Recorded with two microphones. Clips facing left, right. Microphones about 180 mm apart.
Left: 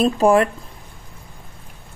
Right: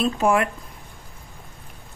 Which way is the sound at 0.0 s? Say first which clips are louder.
Left 5 dB; 35° left (ahead or behind).